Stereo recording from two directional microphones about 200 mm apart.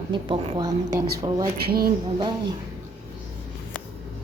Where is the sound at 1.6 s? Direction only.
50° right (ahead or behind).